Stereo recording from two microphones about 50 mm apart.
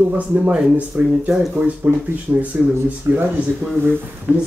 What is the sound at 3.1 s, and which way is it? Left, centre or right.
Speech, right.